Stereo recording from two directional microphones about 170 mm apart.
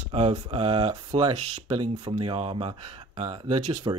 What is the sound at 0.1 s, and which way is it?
Speech, 35° right (ahead or behind).